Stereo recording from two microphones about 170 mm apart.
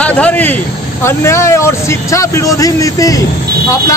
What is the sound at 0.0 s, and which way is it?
Speech, 10° left (ahead or behind).